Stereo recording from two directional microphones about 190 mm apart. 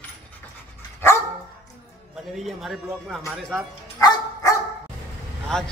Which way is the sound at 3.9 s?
20° left (ahead or behind).